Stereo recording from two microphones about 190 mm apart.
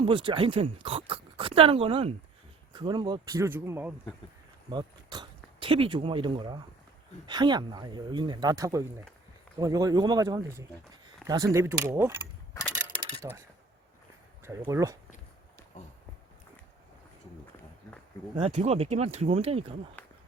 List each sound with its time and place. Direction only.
0.0 s speech: 25° right (ahead or behind)
4.7 s speech: 20° right (ahead or behind)
13.2 s speech: 20° right (ahead or behind)
14.6 s speech: 15° right (ahead or behind)
18.3 s speech: 35° right (ahead or behind)